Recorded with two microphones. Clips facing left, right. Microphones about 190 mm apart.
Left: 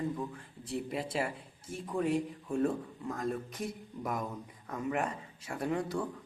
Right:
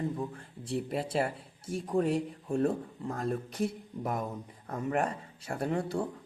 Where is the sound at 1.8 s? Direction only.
35° right (ahead or behind).